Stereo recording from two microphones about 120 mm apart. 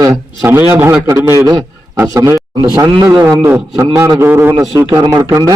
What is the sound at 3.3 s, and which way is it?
A man's voice, 25° right (ahead or behind).